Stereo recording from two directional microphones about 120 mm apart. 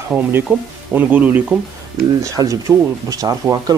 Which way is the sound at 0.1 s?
15° right (ahead or behind).